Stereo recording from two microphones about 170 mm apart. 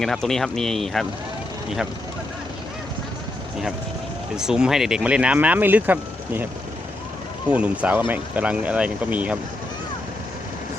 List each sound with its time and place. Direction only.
0.0 s speech: centre (ahead or behind)
4.4 s speech: 5° right (ahead or behind)
7.5 s speech: 5° right (ahead or behind)